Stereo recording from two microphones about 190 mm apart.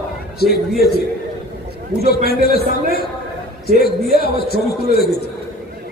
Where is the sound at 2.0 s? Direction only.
55° left (ahead or behind).